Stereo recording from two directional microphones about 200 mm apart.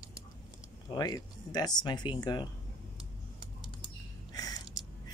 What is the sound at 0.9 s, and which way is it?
Speech, 20° left (ahead or behind).